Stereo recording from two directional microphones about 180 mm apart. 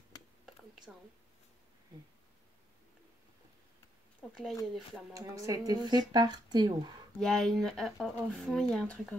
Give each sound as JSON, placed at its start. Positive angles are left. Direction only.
{"t": 0.1, "sound": "a sound", "side_deg": 20}
{"t": 0.9, "sound": "speech", "side_deg": 0}
{"t": 4.2, "sound": "speech", "side_deg": 0}
{"t": 5.1, "sound": "speech", "side_deg": -20}
{"t": 7.2, "sound": "speech", "side_deg": 0}